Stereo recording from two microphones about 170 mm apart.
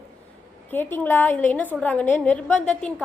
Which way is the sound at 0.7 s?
10° left (ahead or behind).